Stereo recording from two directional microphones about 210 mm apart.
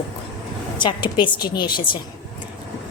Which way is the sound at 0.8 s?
20° left (ahead or behind).